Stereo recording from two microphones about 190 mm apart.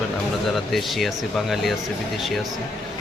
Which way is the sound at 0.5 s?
Centre (ahead or behind).